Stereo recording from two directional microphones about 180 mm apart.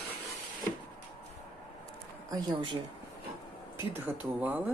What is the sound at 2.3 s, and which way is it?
Speech, 25° right (ahead or behind).